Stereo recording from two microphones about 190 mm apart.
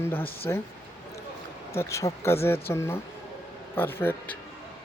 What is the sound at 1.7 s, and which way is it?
Speech, 15° left (ahead or behind).